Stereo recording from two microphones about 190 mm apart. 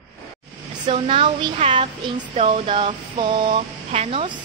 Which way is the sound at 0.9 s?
25° right (ahead or behind).